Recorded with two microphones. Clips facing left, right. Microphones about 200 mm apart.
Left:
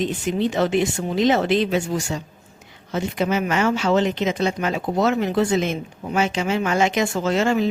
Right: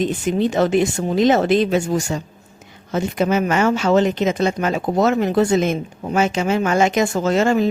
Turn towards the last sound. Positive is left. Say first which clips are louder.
# right 3 dB
turn(degrees=-45)  # may be behind; listen again after turning